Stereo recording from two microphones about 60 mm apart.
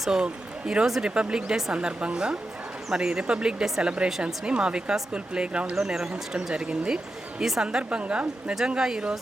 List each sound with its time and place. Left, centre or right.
0.0 s speech: centre